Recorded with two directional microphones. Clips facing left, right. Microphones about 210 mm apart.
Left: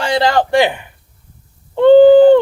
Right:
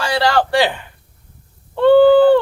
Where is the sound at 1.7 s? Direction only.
20° left (ahead or behind).